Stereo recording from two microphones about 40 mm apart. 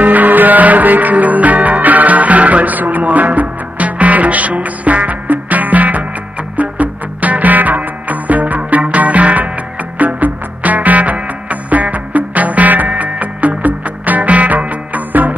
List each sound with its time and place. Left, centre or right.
0.0 s music: right